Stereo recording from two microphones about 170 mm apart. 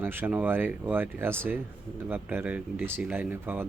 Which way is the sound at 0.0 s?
15° right (ahead or behind).